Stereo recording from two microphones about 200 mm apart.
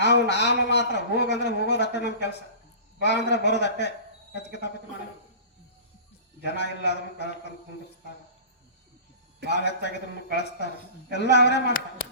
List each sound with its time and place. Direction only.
0.0 s a man's voice: 60° left (ahead or behind)
6.4 s a man's voice: 60° left (ahead or behind)
9.5 s a man's voice: 60° left (ahead or behind)